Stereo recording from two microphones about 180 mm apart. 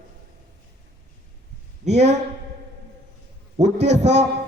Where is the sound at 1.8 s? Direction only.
40° right (ahead or behind).